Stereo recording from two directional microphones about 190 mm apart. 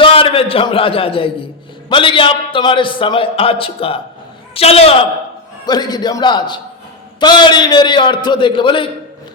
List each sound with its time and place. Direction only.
0.0 s a man's voice: 30° left (ahead or behind)